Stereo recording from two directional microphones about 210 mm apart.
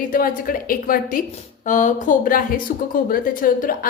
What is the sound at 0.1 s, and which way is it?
A woman's voice, 40° left (ahead or behind).